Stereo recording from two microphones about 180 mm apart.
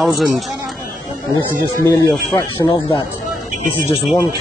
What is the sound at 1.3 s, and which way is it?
Speech, 20° left (ahead or behind).